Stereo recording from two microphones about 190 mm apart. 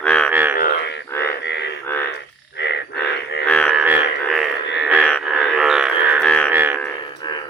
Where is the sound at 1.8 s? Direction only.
10° left (ahead or behind).